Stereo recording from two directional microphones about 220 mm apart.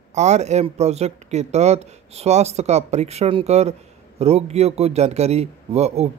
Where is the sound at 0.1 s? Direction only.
30° right (ahead or behind).